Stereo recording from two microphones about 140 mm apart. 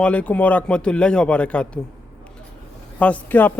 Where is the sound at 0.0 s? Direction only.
10° left (ahead or behind).